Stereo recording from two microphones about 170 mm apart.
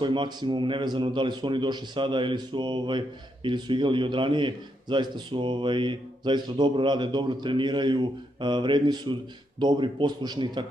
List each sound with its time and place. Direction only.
0.0 s speech: 25° right (ahead or behind)